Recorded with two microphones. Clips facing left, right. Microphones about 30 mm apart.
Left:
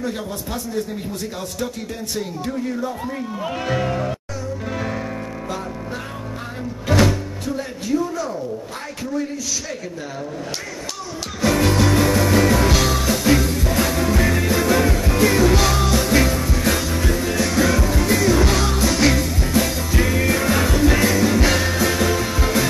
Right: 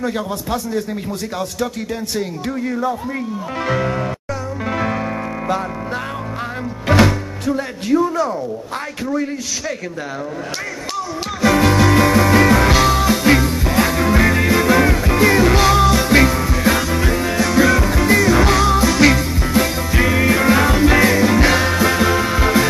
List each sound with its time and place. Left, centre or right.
3.7 s music: centre
4.6 s music: right
6.9 s music: right
11.5 s music: centre
11.9 s music: centre
16.1 s music: right
18.9 s music: centre
19.2 s music: right